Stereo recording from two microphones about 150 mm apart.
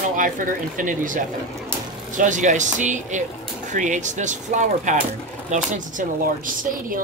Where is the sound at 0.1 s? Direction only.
65° right (ahead or behind).